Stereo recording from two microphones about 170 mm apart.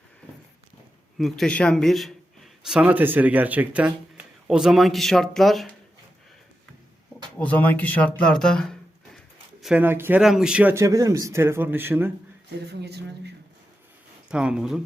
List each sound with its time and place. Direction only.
1.2 s a man's voice: 5° left (ahead or behind)
7.3 s speech: 10° left (ahead or behind); by 12.1 s 15° right (ahead or behind)
12.5 s speech: 80° right
14.3 s speech: 5° right (ahead or behind)